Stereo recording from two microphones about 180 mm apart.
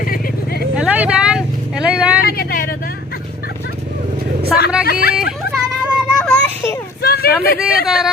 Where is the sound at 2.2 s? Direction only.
55° left (ahead or behind).